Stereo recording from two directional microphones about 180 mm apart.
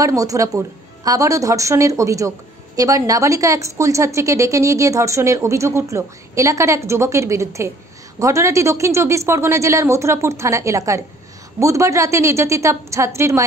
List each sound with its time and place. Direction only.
0.0 s a woman's voice: 20° right (ahead or behind)